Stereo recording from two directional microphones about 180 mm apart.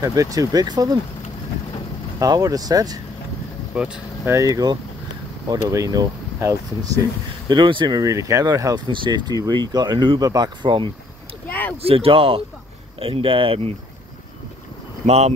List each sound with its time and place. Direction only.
0.0 s speech: 20° right (ahead or behind)
2.1 s speech: 20° right (ahead or behind)
3.7 s speech: 5° right (ahead or behind)
4.3 s speech: 20° right (ahead or behind)
11.4 s a sound: 10° left (ahead or behind)
11.8 s speech: 30° right (ahead or behind)
15.0 s speech: 35° right (ahead or behind)